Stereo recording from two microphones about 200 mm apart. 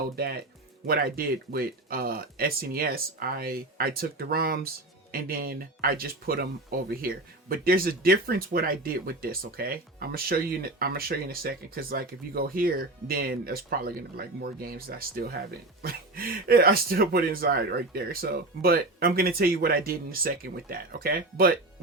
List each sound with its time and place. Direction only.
0.9 s speech: 50° right (ahead or behind)